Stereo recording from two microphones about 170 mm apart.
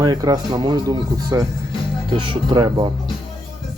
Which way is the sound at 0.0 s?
20° right (ahead or behind).